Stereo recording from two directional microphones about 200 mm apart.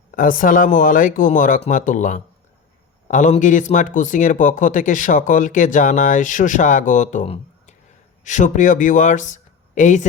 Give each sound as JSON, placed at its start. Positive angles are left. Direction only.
{"t": 0.1, "sound": "speech", "side_deg": 40}